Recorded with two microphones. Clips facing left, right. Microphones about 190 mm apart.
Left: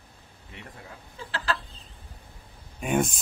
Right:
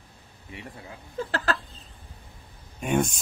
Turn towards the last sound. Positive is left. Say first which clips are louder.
# right 1 dB
turn(degrees=0)  # may be behind; listen again after turning